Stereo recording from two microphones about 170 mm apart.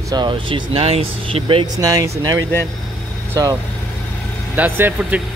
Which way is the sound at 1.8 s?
20° right (ahead or behind).